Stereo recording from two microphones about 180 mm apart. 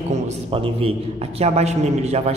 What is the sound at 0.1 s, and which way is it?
A man's voice, 30° right (ahead or behind).